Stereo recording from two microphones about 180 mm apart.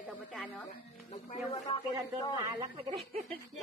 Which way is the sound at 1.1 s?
40° left (ahead or behind).